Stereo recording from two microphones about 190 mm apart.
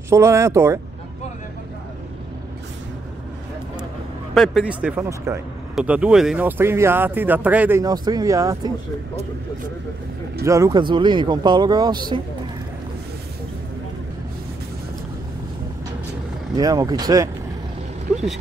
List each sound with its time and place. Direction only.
0.1 s speech: 15° right (ahead or behind)
4.3 s speech: centre (ahead or behind)
7.8 s speech: 20° right (ahead or behind)
10.4 s speech: 15° right (ahead or behind)
16.5 s speech: 20° right (ahead or behind)